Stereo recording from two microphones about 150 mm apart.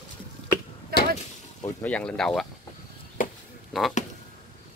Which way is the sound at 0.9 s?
90° right.